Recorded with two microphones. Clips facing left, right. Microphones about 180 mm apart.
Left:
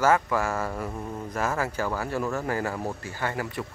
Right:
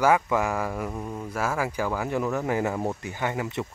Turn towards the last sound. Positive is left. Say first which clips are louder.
# right 2 dB
turn(degrees=-20)  # may be behind; listen again after turning